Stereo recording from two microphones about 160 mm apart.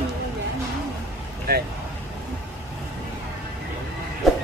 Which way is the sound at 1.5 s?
80° right.